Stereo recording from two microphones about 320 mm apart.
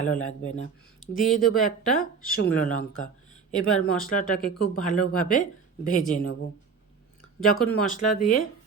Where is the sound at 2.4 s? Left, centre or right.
Left.